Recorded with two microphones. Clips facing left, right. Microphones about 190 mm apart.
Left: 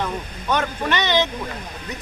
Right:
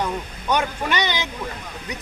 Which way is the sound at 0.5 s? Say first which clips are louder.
Even; 15° right (ahead or behind).